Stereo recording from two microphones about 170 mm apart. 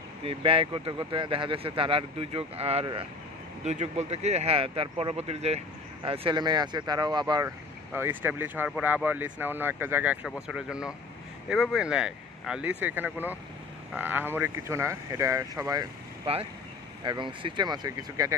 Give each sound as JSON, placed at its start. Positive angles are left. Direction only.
{"t": 0.2, "sound": "speech", "side_deg": -35}
{"t": 3.6, "sound": "speech", "side_deg": -40}
{"t": 7.4, "sound": "speech", "side_deg": -15}
{"t": 16.3, "sound": "speech", "side_deg": -35}